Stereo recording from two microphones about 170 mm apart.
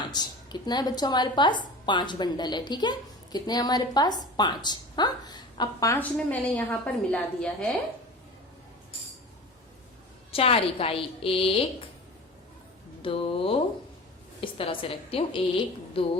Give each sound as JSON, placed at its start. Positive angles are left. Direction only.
{"t": 0.1, "sound": "a woman's voice", "side_deg": 25}
{"t": 6.1, "sound": "a woman's voice", "side_deg": 5}
{"t": 10.3, "sound": "a woman's voice", "side_deg": 35}
{"t": 13.0, "sound": "a woman's voice", "side_deg": 30}